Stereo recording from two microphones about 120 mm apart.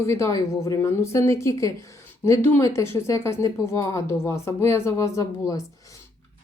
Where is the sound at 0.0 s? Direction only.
25° left (ahead or behind).